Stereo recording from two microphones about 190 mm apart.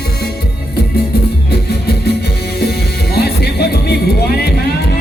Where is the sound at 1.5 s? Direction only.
55° left (ahead or behind).